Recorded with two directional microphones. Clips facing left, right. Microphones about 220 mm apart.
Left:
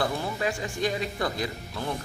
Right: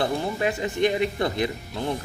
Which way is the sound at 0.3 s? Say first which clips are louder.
Right 5 dB; 20° right (ahead or behind).